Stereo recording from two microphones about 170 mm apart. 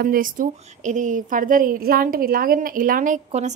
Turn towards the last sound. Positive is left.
turn(degrees=-45)  # may be behind; listen again after turning